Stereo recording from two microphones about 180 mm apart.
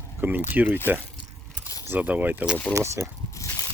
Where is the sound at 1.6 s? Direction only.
20° left (ahead or behind).